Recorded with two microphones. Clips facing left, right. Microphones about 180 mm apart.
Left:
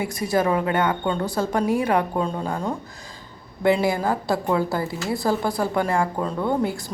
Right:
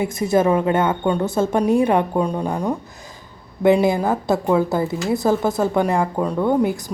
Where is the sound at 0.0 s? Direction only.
20° right (ahead or behind).